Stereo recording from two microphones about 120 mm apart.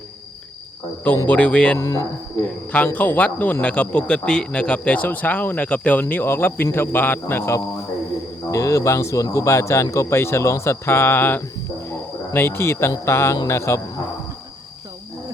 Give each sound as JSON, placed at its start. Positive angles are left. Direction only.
{"t": 1.0, "sound": "a man's voice", "side_deg": 15}
{"t": 1.8, "sound": "speech", "side_deg": 25}
{"t": 2.4, "sound": "a man's voice", "side_deg": 15}
{"t": 11.9, "sound": "insect", "side_deg": 20}
{"t": 13.1, "sound": "speech", "side_deg": 20}